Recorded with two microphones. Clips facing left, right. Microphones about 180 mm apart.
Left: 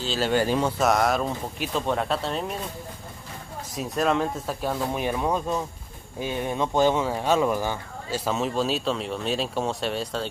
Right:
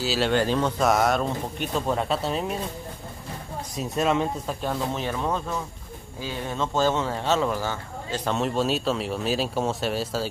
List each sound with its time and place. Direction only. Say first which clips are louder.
0.0 s speech: right 2 dB; 5° right (ahead or behind)
0.3 s speech: left 3 dB; 10° left (ahead or behind)
3.7 s speech: even; centre (ahead or behind); by 8.2 s 15° left (ahead or behind)
8.3 s speech: right 1 dB; centre (ahead or behind)